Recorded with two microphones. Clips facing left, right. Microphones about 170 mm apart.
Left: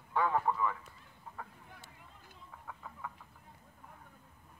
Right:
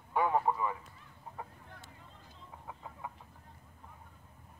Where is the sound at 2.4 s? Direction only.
20° right (ahead or behind).